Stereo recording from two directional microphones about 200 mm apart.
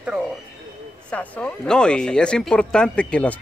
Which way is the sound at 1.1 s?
5° left (ahead or behind).